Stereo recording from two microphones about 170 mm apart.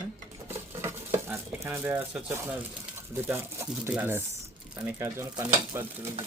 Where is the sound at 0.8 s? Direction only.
15° right (ahead or behind).